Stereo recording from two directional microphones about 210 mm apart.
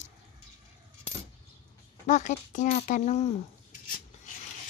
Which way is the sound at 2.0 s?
35° left (ahead or behind).